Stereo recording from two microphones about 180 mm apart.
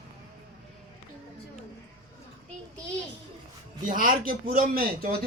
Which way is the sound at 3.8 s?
50° right (ahead or behind).